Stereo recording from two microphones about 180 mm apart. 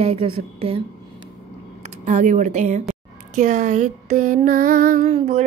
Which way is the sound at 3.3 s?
45° right (ahead or behind).